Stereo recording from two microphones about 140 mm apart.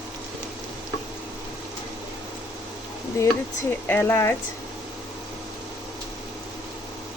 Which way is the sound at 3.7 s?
15° left (ahead or behind).